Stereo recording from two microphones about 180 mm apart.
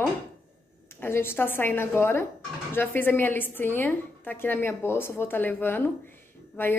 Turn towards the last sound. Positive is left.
turn(degrees=10)  # may be behind; listen again after turning